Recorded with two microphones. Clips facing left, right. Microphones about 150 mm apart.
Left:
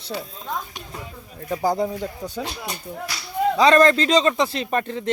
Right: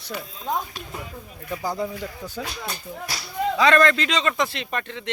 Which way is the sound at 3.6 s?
35° left (ahead or behind).